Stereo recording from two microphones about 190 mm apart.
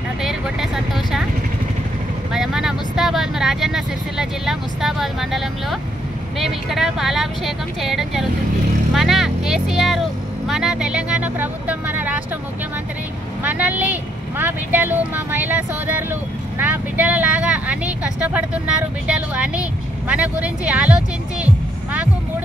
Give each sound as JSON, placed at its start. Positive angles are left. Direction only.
{"t": 0.2, "sound": "speech", "side_deg": 0}
{"t": 2.3, "sound": "speech", "side_deg": 0}
{"t": 13.4, "sound": "speech", "side_deg": -10}